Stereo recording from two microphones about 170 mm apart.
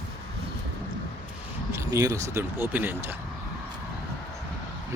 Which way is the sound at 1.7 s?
15° right (ahead or behind).